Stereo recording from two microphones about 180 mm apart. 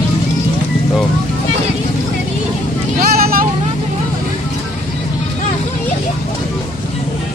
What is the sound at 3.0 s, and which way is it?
Vehicle, 55° right (ahead or behind).